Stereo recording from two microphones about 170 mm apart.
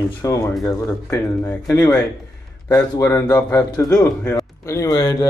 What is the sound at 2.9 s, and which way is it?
Speech, 20° left (ahead or behind).